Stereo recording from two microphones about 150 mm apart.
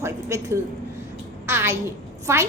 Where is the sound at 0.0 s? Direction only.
20° right (ahead or behind).